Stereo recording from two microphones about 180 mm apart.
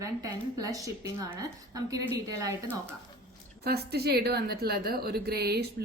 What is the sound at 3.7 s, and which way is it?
A woman's voice, 60° right (ahead or behind).